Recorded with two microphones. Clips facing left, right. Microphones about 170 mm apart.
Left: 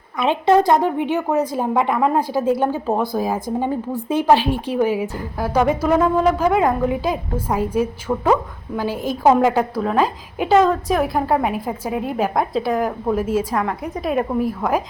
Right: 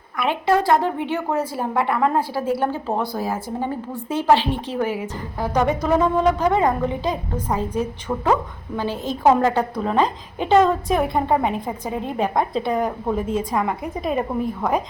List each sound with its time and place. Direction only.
0.2 s a woman's voice: 20° left (ahead or behind); by 14.8 s 5° left (ahead or behind)